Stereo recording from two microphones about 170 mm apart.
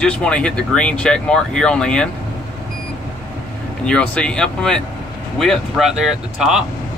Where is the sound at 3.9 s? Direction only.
5° left (ahead or behind).